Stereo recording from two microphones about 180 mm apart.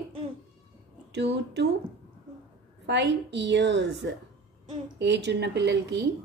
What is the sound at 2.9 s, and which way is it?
A woman's voice, 75° right (ahead or behind).